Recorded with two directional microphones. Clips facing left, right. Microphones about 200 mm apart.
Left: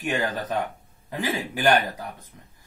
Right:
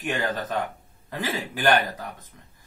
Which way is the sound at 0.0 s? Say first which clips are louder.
Left 1 dB; 10° left (ahead or behind).